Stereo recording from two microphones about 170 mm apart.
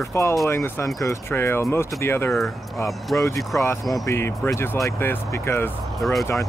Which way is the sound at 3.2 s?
20° left (ahead or behind).